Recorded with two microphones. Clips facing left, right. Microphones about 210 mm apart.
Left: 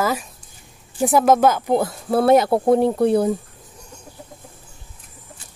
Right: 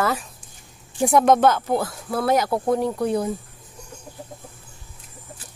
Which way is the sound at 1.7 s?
20° left (ahead or behind).